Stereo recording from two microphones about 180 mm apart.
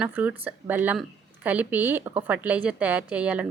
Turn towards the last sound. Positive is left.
turn(degrees=-5)  # may be behind; listen again after turning